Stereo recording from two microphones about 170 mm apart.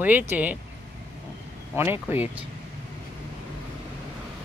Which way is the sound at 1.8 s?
15° right (ahead or behind).